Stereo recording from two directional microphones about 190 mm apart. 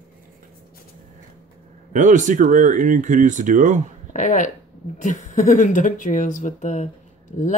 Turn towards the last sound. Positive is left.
turn(degrees=40)  # may be behind; listen again after turning